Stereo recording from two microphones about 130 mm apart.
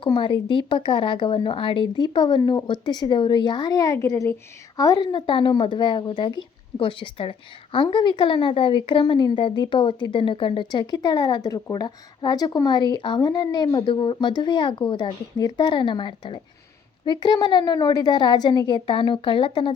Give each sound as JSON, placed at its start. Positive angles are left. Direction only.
{"t": 0.0, "sound": "a woman's voice", "side_deg": 40}